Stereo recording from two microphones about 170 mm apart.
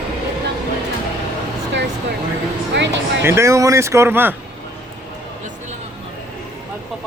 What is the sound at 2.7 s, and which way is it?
Music, 90° right.